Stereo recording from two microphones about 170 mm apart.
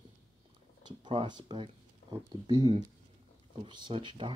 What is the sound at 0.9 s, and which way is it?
Speech, 25° right (ahead or behind).